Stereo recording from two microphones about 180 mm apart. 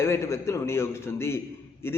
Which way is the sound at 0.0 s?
15° left (ahead or behind).